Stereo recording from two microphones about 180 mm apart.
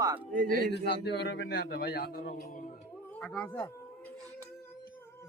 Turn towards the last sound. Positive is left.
turn(degrees=10)  # may be behind; listen again after turning